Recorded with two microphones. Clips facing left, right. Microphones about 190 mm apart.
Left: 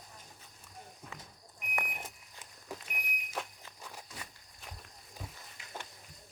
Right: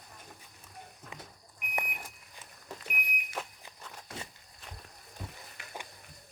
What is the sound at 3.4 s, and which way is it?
Walk, centre (ahead or behind).